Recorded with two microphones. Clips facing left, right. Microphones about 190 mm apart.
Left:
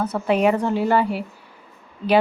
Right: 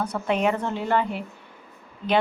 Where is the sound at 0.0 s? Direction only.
5° left (ahead or behind).